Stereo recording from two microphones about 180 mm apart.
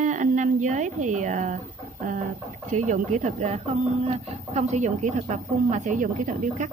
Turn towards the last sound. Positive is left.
turn(degrees=-50)  # may be behind; listen again after turning